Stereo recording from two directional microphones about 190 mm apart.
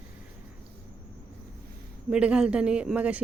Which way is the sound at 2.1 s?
5° right (ahead or behind).